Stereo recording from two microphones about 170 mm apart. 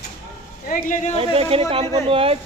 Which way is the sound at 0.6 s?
55° left (ahead or behind).